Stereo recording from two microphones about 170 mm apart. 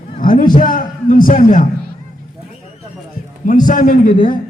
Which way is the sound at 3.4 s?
50° left (ahead or behind).